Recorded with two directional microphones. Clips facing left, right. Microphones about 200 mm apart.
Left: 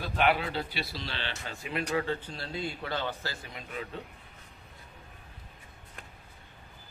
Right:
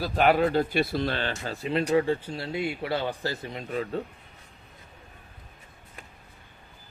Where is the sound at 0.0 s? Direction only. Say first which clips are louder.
Right 6 dB; 40° right (ahead or behind).